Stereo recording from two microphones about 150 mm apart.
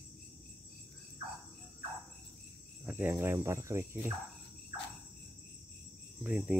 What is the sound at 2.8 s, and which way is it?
Speech, 10° right (ahead or behind).